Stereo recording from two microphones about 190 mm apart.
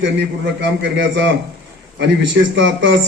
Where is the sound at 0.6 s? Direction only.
70° right (ahead or behind).